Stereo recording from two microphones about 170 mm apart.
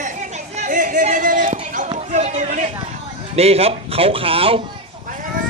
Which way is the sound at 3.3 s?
35° right (ahead or behind).